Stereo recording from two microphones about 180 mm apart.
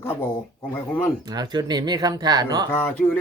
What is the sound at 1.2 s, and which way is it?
Speech, 20° right (ahead or behind).